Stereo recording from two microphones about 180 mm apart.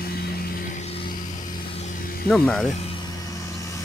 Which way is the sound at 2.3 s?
5° left (ahead or behind).